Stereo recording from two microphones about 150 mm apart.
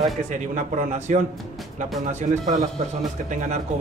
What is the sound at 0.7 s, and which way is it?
Speech, 55° right (ahead or behind).